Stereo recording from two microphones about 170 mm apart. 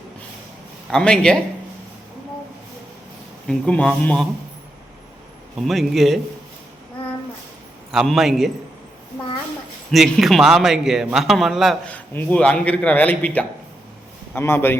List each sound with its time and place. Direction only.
0.9 s a man's voice: 5° left (ahead or behind)
3.4 s a man's voice: 5° left (ahead or behind)
5.5 s a man's voice: centre (ahead or behind)
7.0 s a sound: 35° left (ahead or behind)
7.9 s a man's voice: centre (ahead or behind)
9.9 s a man's voice: centre (ahead or behind)